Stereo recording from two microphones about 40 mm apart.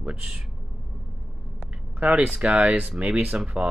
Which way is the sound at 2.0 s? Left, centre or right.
Right.